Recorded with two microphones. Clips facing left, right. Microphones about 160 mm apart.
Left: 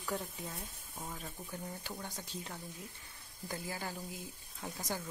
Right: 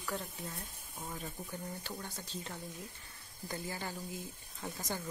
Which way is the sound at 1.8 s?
15° left (ahead or behind).